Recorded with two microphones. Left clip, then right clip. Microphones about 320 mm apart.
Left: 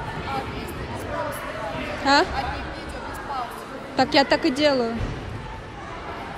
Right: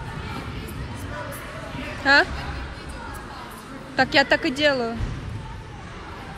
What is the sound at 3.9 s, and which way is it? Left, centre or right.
Speech, centre.